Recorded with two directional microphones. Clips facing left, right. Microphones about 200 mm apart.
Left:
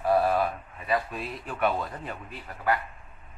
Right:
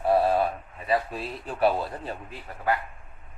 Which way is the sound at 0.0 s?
25° right (ahead or behind).